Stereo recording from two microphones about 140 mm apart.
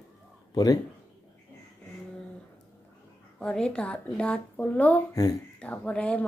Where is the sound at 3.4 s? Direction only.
5° left (ahead or behind).